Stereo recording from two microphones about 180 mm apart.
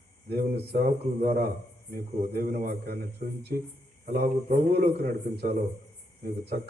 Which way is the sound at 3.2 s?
45° right (ahead or behind).